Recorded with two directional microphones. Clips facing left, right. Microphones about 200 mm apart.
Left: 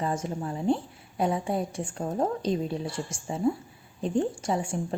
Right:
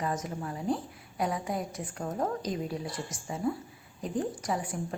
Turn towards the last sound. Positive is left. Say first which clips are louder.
# left 4 dB
turn(degrees=25)  # may be behind; listen again after turning